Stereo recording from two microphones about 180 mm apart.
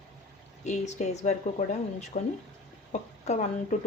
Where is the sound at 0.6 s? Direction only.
40° left (ahead or behind).